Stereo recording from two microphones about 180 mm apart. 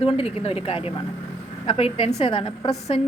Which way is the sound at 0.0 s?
30° left (ahead or behind).